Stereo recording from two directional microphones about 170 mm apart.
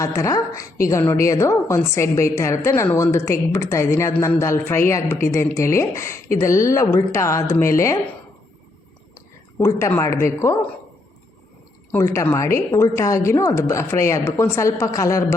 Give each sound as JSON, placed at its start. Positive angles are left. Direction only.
{"t": 0.0, "sound": "a woman's voice", "side_deg": 20}
{"t": 9.6, "sound": "a woman's voice", "side_deg": 15}
{"t": 11.9, "sound": "a woman's voice", "side_deg": 15}